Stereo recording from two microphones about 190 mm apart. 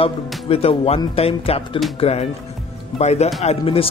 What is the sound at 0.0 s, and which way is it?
Speech, 30° left (ahead or behind).